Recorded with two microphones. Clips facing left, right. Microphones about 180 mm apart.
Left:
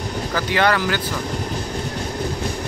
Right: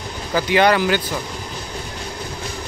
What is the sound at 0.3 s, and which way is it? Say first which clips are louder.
Speech: right 4 dB; 15° right (ahead or behind).